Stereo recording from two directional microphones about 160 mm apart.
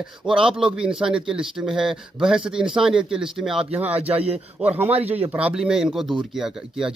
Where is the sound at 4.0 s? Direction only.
40° right (ahead or behind).